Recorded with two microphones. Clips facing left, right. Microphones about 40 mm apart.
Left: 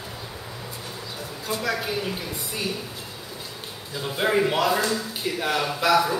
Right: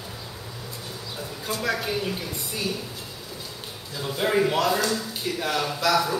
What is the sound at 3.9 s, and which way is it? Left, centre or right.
Speech, centre.